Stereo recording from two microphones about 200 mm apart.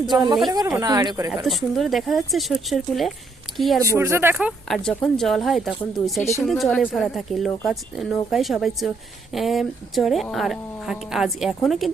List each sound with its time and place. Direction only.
0.5 s speech: 15° right (ahead or behind)
1.5 s speech: centre (ahead or behind)
3.8 s speech: 15° right (ahead or behind)